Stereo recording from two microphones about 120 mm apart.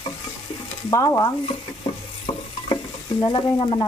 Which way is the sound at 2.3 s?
45° left (ahead or behind).